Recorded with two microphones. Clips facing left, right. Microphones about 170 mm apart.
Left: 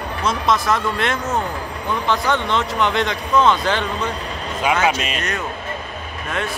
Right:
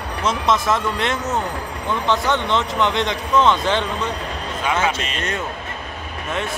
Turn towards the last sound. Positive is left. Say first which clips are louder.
# left 3 dB
turn(degrees=10)  # may be behind; listen again after turning